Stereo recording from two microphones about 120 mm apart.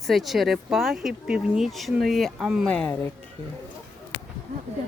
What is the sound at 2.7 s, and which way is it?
Speech, 10° left (ahead or behind).